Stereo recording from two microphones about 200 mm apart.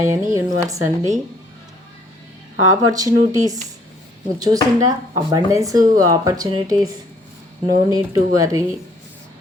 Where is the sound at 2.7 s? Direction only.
15° right (ahead or behind).